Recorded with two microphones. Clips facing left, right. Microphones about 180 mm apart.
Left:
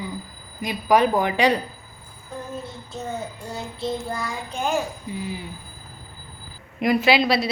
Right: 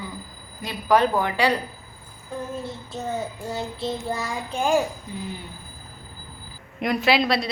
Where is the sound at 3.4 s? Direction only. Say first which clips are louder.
Right 1 dB; centre (ahead or behind).